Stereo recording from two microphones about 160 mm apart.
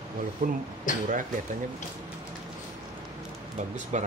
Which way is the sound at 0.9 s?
55° left (ahead or behind).